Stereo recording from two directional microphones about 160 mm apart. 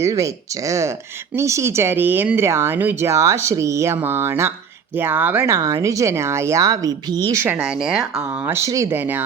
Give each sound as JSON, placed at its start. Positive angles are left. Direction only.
{"t": 0.0, "sound": "speech", "side_deg": -20}
{"t": 7.5, "sound": "speech", "side_deg": -5}